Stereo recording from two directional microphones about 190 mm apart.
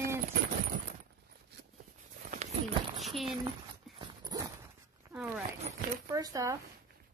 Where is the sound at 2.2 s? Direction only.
45° right (ahead or behind).